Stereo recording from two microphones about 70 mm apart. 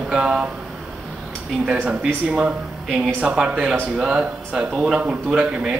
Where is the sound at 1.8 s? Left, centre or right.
Centre.